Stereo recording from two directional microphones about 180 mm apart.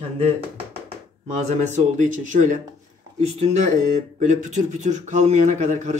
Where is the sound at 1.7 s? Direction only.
45° right (ahead or behind).